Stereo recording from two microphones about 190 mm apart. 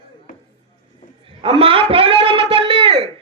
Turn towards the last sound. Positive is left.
turn(degrees=-30)  # may be behind; listen again after turning